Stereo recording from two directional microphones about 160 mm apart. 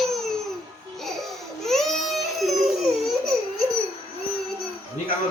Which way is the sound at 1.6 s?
Centre (ahead or behind).